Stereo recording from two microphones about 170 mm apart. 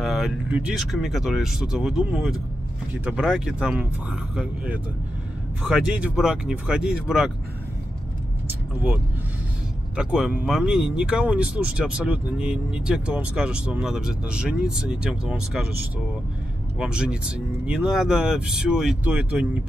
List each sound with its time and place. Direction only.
0.0 s speech: 5° right (ahead or behind)
9.9 s speech: 5° right (ahead or behind)
16.7 s speech: 5° right (ahead or behind)